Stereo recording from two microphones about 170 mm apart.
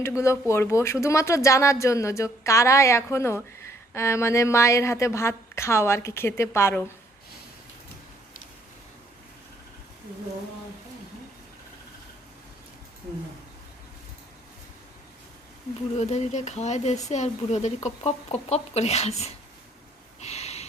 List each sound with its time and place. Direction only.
0.2 s speech: 15° left (ahead or behind)
16.0 s speech: 40° left (ahead or behind)
20.2 s snort: 40° left (ahead or behind)